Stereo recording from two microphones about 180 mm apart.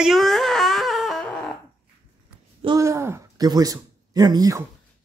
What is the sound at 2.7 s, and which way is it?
Speech, 15° right (ahead or behind).